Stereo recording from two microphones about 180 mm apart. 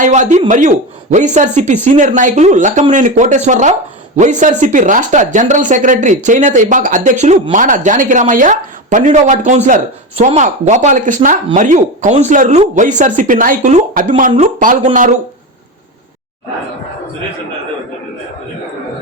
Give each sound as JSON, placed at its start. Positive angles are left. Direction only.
{"t": 0.0, "sound": "speech", "side_deg": -45}